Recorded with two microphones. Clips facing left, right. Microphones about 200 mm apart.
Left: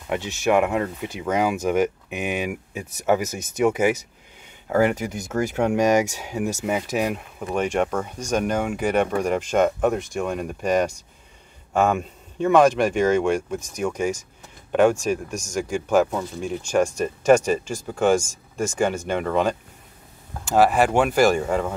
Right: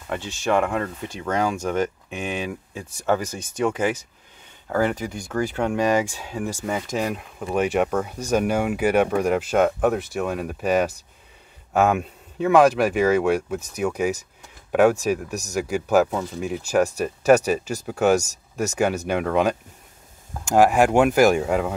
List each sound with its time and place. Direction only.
0.1 s speech: 15° left (ahead or behind)
7.2 s speech: 5° right (ahead or behind)
17.8 s speech: 5° right (ahead or behind)
18.2 s speech: 40° right (ahead or behind)
19.0 s speech: 10° right (ahead or behind)